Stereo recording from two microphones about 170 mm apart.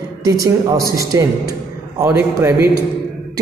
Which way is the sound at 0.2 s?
20° right (ahead or behind).